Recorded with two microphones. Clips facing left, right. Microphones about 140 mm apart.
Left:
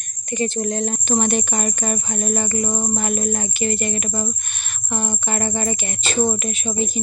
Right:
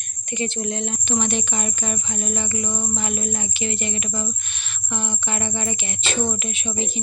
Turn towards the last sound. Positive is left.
turn(degrees=45)  # may be behind; listen again after turning